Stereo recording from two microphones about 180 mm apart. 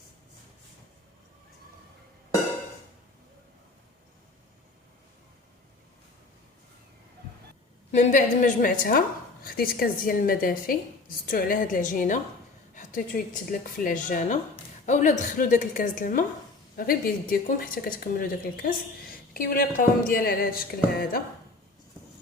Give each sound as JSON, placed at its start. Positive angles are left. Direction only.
{"t": 7.9, "sound": "a woman's voice", "side_deg": 45}